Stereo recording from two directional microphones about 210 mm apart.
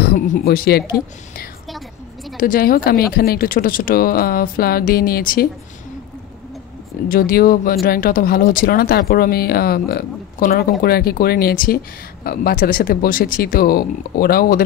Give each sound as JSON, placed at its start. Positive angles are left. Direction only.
{"t": 0.0, "sound": "speech", "side_deg": 45}
{"t": 7.1, "sound": "speech", "side_deg": 45}